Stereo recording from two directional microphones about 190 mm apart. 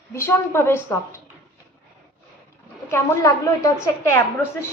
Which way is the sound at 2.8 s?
15° left (ahead or behind).